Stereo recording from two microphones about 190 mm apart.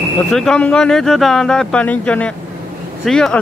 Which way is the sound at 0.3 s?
5° left (ahead or behind).